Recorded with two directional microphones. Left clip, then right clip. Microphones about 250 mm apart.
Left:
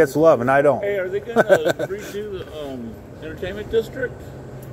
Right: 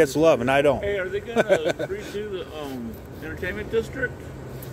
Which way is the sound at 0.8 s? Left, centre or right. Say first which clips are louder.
Left 3 dB; left.